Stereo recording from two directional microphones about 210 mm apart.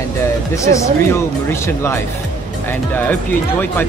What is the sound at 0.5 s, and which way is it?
Speech, 15° left (ahead or behind).